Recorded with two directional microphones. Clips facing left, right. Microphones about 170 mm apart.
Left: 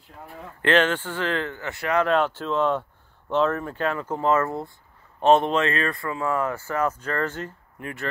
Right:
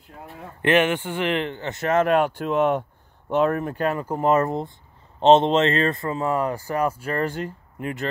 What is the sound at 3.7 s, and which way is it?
Speech, 40° right (ahead or behind).